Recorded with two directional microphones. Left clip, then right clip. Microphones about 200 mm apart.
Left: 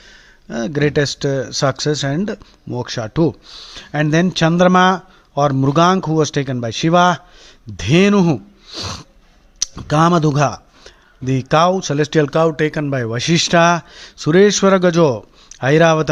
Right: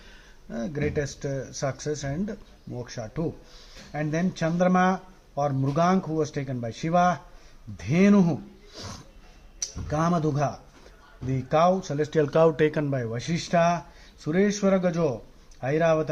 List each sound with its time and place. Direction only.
0.5 s speech: 35° left (ahead or behind)
12.3 s speech: 15° left (ahead or behind)
12.9 s a man's voice: 35° left (ahead or behind)